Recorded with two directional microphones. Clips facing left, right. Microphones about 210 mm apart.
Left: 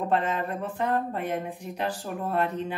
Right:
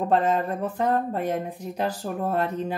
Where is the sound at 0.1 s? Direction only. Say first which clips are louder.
Right 6 dB; 40° right (ahead or behind).